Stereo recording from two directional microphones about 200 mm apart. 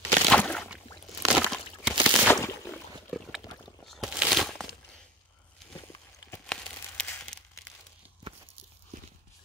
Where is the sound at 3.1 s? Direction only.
5° left (ahead or behind).